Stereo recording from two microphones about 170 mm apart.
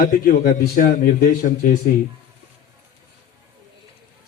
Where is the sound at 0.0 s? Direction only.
55° left (ahead or behind).